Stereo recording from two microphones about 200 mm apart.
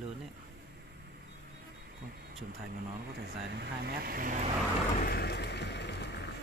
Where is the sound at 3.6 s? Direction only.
50° right (ahead or behind).